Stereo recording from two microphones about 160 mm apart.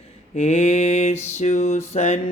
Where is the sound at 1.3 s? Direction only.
45° left (ahead or behind).